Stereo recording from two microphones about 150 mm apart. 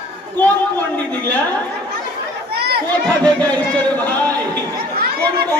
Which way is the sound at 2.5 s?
90° right.